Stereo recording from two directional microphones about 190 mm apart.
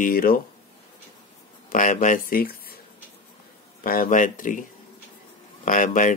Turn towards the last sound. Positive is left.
turn(degrees=45)  # may be behind; listen again after turning